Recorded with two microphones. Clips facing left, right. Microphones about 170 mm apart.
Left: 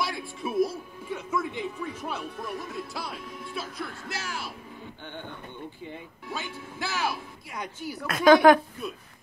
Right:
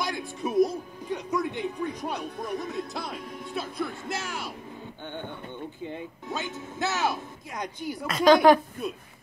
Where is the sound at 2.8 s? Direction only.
45° right (ahead or behind).